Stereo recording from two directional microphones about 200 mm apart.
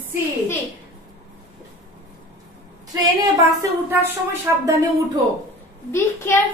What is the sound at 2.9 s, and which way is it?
A woman's voice, 20° right (ahead or behind).